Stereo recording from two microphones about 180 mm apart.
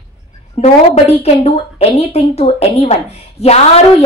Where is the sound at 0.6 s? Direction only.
35° left (ahead or behind).